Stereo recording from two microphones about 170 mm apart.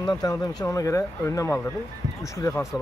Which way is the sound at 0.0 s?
20° left (ahead or behind).